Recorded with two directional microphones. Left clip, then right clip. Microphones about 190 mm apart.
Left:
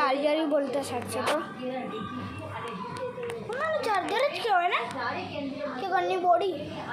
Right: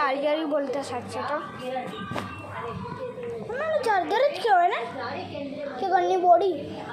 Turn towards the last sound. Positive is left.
turn(degrees=-10)  # may be behind; listen again after turning